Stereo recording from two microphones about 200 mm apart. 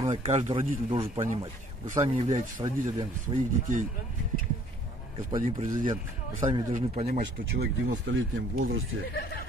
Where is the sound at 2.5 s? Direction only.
20° right (ahead or behind).